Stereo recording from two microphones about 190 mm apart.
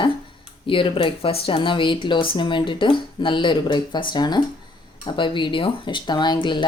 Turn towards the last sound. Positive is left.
turn(degrees=25)  # may be behind; listen again after turning